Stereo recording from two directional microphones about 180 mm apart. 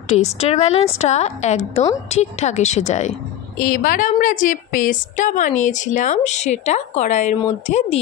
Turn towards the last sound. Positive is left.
turn(degrees=40)  # may be behind; listen again after turning